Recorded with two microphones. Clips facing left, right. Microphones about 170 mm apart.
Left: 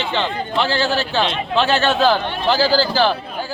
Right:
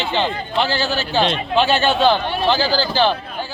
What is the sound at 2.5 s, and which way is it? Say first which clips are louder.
Speech: left 3 dB; 35° left (ahead or behind).